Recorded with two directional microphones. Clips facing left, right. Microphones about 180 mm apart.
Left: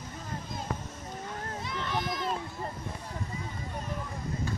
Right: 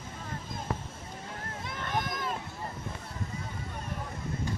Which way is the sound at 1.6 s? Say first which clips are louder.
Even; 50° right (ahead or behind).